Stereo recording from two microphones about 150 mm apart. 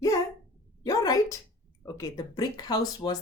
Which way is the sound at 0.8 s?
25° left (ahead or behind).